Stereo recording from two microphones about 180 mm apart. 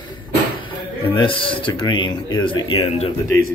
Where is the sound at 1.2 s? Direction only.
30° left (ahead or behind).